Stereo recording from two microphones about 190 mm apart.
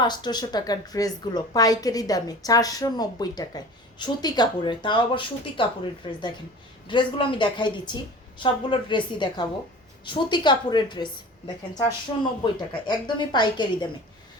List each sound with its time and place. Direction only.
0.0 s a woman's voice: 20° left (ahead or behind)